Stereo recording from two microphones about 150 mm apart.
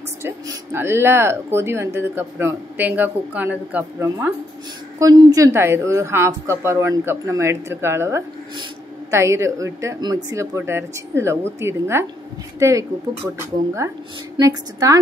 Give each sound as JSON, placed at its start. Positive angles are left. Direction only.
{"t": 0.2, "sound": "a woman's voice", "side_deg": -15}